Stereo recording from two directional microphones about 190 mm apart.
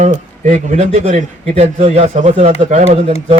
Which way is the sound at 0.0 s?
40° right (ahead or behind).